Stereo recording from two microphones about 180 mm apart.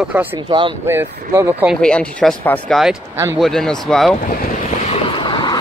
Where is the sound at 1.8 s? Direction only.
5° left (ahead or behind).